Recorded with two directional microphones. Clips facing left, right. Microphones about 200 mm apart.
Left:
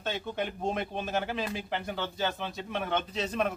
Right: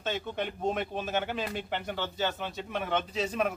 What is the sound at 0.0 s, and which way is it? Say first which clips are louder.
A man's voice: even; centre (ahead or behind).